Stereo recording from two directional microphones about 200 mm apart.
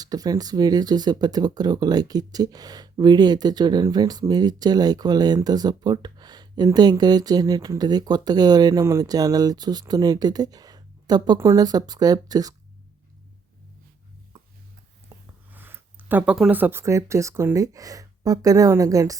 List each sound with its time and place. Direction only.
0.0 s speech: 20° right (ahead or behind)
15.1 s a sound: 15° right (ahead or behind)
15.5 s speech: 10° right (ahead or behind)